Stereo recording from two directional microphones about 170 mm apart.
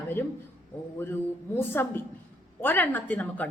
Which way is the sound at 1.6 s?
10° left (ahead or behind).